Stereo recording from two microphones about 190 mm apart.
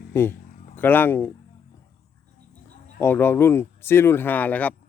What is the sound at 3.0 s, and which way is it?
Speech, 10° left (ahead or behind).